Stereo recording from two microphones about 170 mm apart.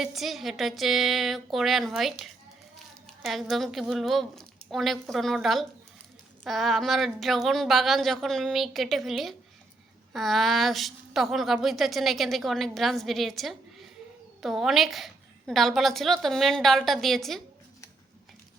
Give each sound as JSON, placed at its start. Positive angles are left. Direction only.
{"t": 0.0, "sound": "a woman's voice", "side_deg": 0}